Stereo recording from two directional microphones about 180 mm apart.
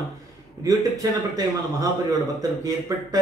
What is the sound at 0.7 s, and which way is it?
A man's voice, 20° right (ahead or behind).